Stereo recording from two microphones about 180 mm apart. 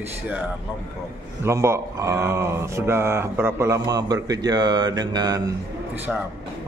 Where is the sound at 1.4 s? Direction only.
15° right (ahead or behind).